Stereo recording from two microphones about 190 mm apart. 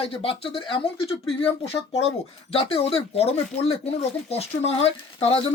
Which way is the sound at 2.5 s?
30° left (ahead or behind).